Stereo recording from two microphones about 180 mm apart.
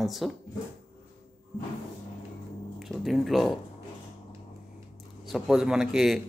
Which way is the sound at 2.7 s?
Centre (ahead or behind).